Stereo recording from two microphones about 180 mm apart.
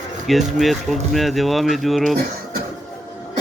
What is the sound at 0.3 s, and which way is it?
Speech, centre (ahead or behind).